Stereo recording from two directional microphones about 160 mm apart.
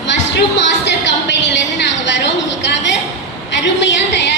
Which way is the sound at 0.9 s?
90° left.